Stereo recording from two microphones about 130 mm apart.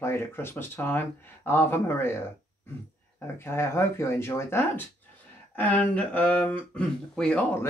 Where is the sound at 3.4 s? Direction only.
20° left (ahead or behind).